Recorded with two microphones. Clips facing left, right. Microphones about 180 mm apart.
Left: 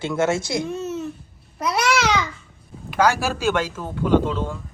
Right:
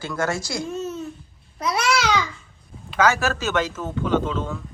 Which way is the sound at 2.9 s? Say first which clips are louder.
Even; 10° left (ahead or behind).